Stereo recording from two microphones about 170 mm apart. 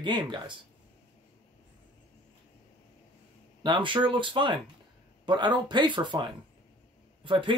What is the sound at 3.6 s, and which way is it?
Speech, 30° right (ahead or behind).